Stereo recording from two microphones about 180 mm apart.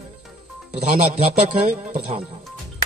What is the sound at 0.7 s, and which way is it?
A man's voice, 40° right (ahead or behind).